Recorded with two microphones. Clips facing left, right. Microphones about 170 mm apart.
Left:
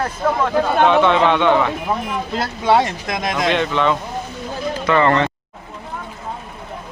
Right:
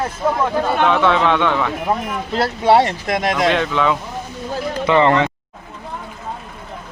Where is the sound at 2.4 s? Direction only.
30° right (ahead or behind).